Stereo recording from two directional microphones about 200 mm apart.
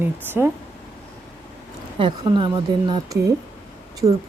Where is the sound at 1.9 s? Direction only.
25° right (ahead or behind).